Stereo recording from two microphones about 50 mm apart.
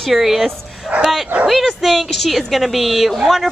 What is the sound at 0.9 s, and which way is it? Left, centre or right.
Speech, right.